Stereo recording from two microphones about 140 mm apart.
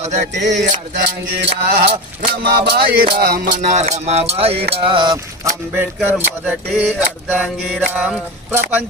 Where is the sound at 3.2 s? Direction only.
90° right.